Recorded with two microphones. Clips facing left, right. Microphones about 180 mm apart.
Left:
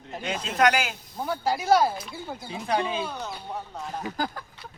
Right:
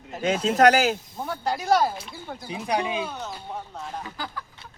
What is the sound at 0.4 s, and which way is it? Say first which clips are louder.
Speech: right 5 dB; 40° right (ahead or behind).